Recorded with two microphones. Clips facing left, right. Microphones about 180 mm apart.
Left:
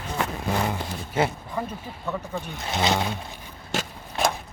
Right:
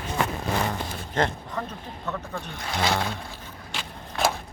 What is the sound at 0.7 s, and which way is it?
Speech, 10° left (ahead or behind).